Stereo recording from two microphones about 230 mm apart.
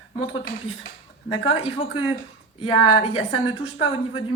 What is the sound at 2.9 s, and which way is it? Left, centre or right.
A woman's voice, left.